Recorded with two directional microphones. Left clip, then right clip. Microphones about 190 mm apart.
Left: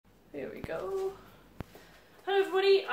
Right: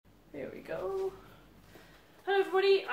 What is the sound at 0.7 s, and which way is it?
Speech, 10° left (ahead or behind).